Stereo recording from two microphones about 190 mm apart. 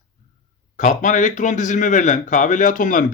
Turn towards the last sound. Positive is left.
turn(degrees=40)  # may be behind; listen again after turning